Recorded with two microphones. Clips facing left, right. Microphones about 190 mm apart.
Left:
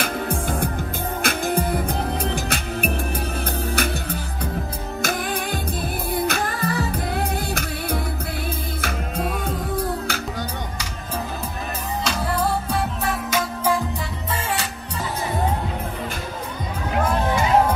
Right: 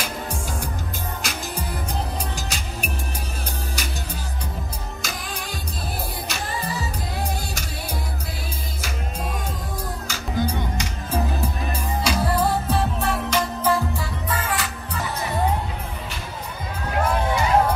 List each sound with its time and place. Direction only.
0.0 s music: 55° left (ahead or behind)
12.0 s music: 10° right (ahead or behind)
13.3 s music: 10° left (ahead or behind)